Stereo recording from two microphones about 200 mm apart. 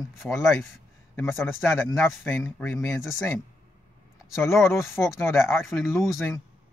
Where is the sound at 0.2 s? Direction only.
Centre (ahead or behind).